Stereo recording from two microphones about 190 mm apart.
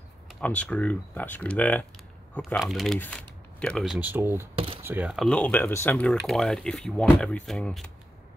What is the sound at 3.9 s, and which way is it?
Speech, 10° right (ahead or behind).